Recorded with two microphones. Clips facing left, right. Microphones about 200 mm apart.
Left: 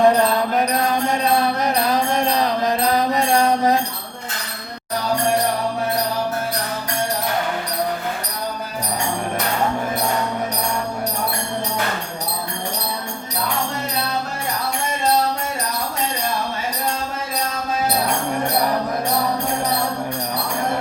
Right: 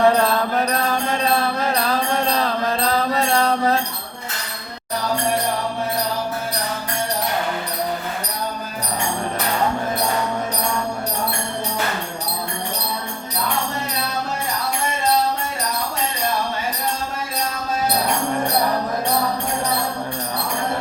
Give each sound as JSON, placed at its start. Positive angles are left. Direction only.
{"t": 0.0, "sound": "music", "side_deg": 15}